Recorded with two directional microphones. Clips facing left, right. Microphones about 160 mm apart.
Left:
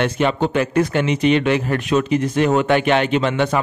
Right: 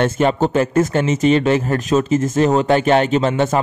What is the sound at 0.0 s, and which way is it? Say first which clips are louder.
Speech: right 2 dB; 40° right (ahead or behind).